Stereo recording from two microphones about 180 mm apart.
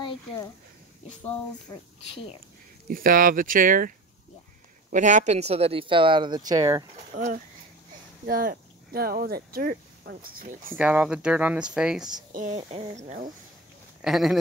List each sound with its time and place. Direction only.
0.0 s a sound: 25° left (ahead or behind)
1.7 s speech: 20° left (ahead or behind)
2.9 s speech: 50° right (ahead or behind)
4.9 s speech: 45° right (ahead or behind); by 6.8 s 20° right (ahead or behind)
7.2 s speech: 45° right (ahead or behind)
10.8 s speech: 5° right (ahead or behind)
12.4 s speech: 40° right (ahead or behind)
14.0 s speech: centre (ahead or behind)